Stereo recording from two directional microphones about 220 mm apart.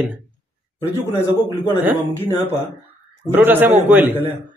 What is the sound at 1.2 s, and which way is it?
Speech, 15° left (ahead or behind).